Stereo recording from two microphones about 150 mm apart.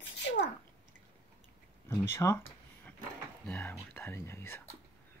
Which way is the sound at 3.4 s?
10° left (ahead or behind).